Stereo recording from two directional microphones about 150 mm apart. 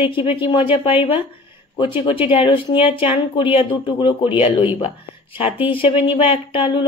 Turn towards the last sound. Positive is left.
turn(degrees=35)  # may be behind; listen again after turning